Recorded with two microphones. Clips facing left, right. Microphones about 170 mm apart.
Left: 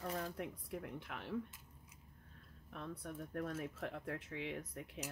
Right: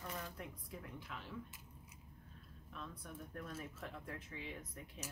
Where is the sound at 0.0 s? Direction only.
40° left (ahead or behind).